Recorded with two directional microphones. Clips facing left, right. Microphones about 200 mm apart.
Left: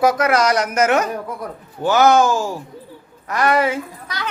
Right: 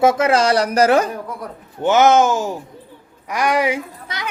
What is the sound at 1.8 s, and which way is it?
Speech, 20° right (ahead or behind).